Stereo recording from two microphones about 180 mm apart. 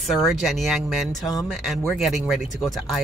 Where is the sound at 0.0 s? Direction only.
Centre (ahead or behind).